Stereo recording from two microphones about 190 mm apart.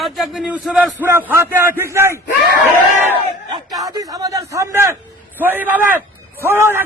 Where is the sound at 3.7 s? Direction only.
20° right (ahead or behind).